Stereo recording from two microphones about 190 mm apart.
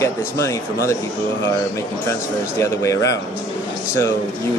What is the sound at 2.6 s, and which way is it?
Speech, 15° left (ahead or behind).